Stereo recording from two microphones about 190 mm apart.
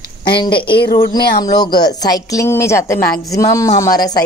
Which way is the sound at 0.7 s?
55° left (ahead or behind).